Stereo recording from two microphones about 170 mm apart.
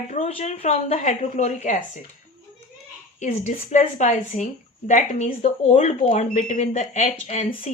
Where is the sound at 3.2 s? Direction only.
45° left (ahead or behind).